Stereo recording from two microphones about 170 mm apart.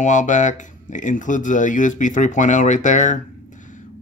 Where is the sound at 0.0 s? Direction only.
45° left (ahead or behind).